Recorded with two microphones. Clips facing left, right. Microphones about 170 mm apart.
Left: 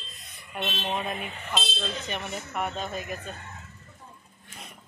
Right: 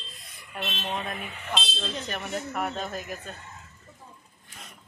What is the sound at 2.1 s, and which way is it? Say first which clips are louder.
Speech: right 2 dB; centre (ahead or behind).